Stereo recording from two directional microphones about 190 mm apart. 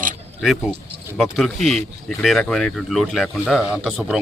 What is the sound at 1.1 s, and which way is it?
Speech, centre (ahead or behind).